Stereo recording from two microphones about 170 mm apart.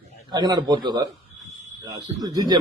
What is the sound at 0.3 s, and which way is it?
Speech, 25° right (ahead or behind).